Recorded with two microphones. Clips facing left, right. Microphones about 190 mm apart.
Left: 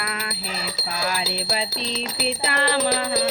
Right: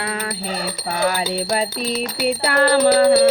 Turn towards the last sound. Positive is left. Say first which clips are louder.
# right 9 dB
turn(degrees=-45)  # may be behind; listen again after turning